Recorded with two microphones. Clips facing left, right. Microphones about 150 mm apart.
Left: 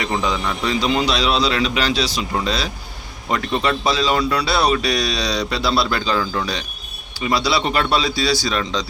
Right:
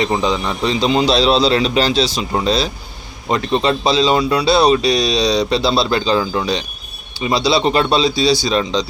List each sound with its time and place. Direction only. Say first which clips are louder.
0.0 s a man's voice: right 4 dB; 25° right (ahead or behind)